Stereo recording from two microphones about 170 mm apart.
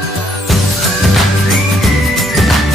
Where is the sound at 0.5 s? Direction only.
Centre (ahead or behind).